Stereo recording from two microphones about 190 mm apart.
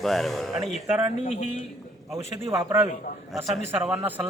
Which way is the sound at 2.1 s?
20° right (ahead or behind).